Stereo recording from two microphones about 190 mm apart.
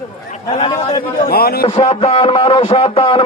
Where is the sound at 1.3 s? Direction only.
55° left (ahead or behind).